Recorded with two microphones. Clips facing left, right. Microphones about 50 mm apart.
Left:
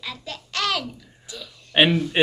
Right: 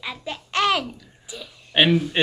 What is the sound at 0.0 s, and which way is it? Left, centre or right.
Babbling, right.